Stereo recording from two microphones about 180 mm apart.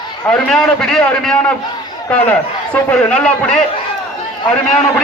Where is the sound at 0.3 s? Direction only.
5° left (ahead or behind).